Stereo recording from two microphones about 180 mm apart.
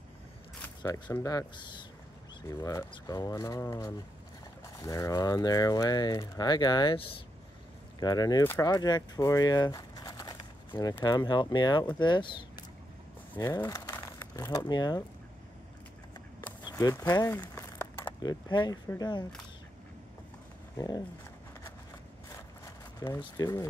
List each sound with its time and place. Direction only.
1.1 s speech: 20° left (ahead or behind)
16.6 s a sound: 20° left (ahead or behind)
18.9 s speech: 20° left (ahead or behind)
20.7 s speech: 20° left (ahead or behind)
22.9 s speech: 20° left (ahead or behind)